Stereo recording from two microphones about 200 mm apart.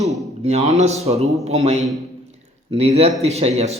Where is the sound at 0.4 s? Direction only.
35° right (ahead or behind).